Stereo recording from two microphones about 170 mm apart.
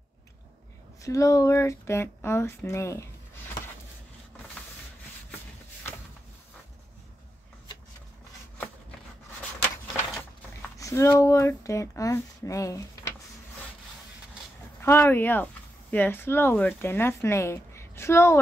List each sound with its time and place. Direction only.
1.0 s speech: 20° left (ahead or behind)
10.8 s speech: 20° left (ahead or behind)
14.8 s speech: 15° left (ahead or behind)